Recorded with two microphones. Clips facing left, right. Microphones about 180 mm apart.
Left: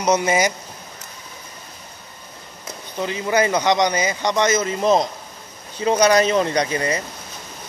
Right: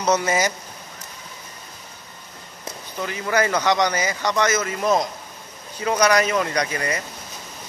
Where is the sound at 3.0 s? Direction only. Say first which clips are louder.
Left 3 dB; 20° left (ahead or behind).